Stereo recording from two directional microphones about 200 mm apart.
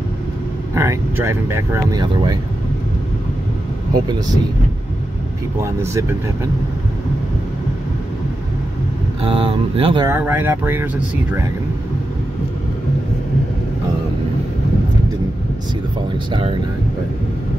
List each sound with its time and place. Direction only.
0.7 s speech: 15° right (ahead or behind)
3.9 s speech: 20° right (ahead or behind)
5.6 s speech: 15° right (ahead or behind)
9.2 s speech: 25° right (ahead or behind)
10.0 s speech: 10° right (ahead or behind)
16.3 s speech: 25° right (ahead or behind)